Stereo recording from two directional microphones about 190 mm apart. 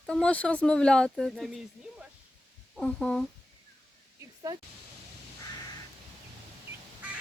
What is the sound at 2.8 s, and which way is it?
Speech, 5° left (ahead or behind).